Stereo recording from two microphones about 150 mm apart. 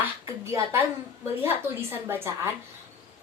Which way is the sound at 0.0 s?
20° right (ahead or behind).